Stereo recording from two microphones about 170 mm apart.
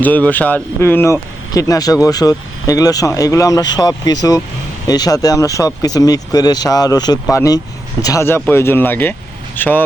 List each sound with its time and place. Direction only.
0.0 s speech: 10° left (ahead or behind)